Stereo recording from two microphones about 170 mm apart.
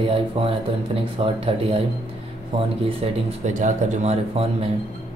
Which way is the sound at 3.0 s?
35° right (ahead or behind).